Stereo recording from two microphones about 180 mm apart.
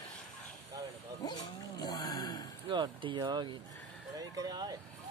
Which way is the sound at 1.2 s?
20° left (ahead or behind).